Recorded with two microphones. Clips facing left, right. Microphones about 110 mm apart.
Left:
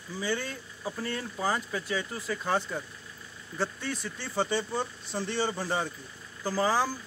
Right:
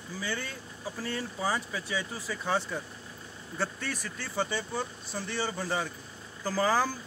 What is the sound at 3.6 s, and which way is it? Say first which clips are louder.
A woman's voice: left 2 dB; 20° left (ahead or behind).